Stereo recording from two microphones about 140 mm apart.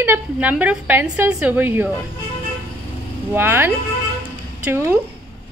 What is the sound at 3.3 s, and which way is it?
A woman's voice, 15° right (ahead or behind).